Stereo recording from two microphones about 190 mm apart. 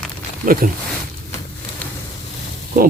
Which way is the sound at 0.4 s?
45° right (ahead or behind).